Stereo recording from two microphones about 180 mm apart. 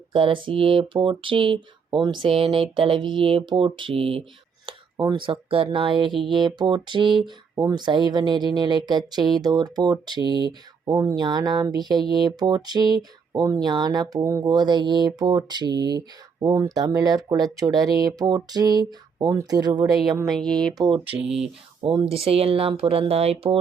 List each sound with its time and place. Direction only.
0.1 s speech: 30° right (ahead or behind)
20.2 s speech: centre (ahead or behind)
20.7 s speech: 25° right (ahead or behind)
21.2 s speech: 5° right (ahead or behind)
21.8 s speech: 30° right (ahead or behind)